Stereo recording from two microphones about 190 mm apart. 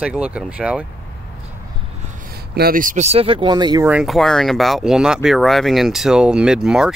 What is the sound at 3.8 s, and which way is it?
Speech, 5° right (ahead or behind).